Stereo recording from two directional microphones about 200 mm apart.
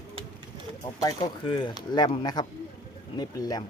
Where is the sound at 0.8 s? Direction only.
20° left (ahead or behind).